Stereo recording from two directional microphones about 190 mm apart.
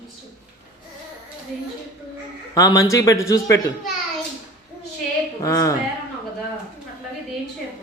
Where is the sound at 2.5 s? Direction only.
20° left (ahead or behind).